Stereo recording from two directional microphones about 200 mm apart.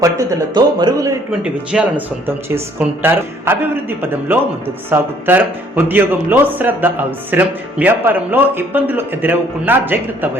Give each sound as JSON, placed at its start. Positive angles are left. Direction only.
{"t": 0.0, "sound": "speech", "side_deg": -15}
{"t": 1.3, "sound": "speech", "side_deg": -5}